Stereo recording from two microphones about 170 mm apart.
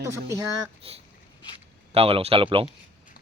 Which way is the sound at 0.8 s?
35° right (ahead or behind).